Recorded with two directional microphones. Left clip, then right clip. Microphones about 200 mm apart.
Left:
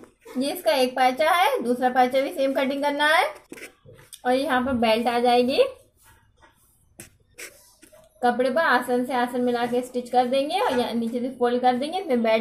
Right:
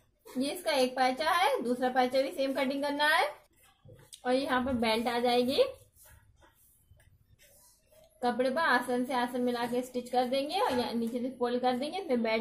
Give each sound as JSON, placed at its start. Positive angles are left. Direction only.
{"t": 0.4, "sound": "a woman's voice", "side_deg": 20}
{"t": 8.2, "sound": "a woman's voice", "side_deg": 20}